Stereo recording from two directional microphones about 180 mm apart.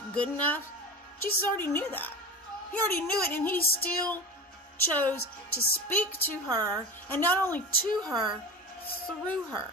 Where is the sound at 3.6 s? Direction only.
55° left (ahead or behind).